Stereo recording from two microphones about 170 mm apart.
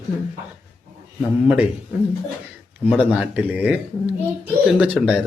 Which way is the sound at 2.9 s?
10° right (ahead or behind).